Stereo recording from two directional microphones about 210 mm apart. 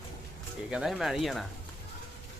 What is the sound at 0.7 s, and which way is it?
Speech, 5° right (ahead or behind).